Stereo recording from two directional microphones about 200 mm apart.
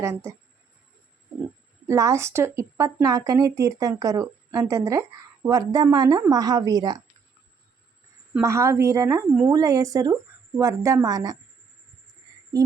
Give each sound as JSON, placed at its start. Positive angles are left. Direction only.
{"t": 0.0, "sound": "speech", "side_deg": -15}
{"t": 1.9, "sound": "speech", "side_deg": -15}
{"t": 8.3, "sound": "speech", "side_deg": -15}
{"t": 12.5, "sound": "speech", "side_deg": -20}